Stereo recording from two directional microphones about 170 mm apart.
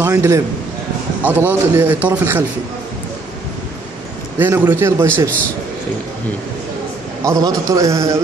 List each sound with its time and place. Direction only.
0.0 s a man's voice: 15° right (ahead or behind)
4.4 s a man's voice: 10° right (ahead or behind)
7.2 s a man's voice: 20° right (ahead or behind)